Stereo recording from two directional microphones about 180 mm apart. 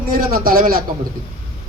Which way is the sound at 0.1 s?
55° right (ahead or behind).